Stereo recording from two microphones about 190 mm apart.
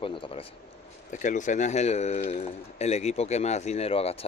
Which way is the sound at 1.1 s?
40° left (ahead or behind).